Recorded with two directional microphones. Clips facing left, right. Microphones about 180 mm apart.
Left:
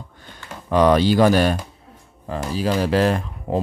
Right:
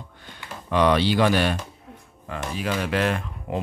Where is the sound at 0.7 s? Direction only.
40° left (ahead or behind).